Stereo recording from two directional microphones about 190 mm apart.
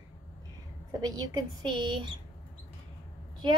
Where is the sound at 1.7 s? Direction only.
25° right (ahead or behind).